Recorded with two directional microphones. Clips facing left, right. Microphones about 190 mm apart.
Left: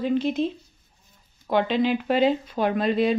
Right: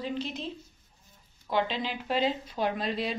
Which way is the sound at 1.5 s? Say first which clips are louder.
Left 8 dB; 55° left (ahead or behind).